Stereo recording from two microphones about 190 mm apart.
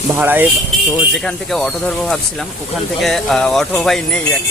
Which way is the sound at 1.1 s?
Centre (ahead or behind).